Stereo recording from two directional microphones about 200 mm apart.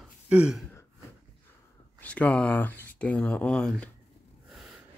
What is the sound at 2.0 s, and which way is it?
Speech, 5° left (ahead or behind).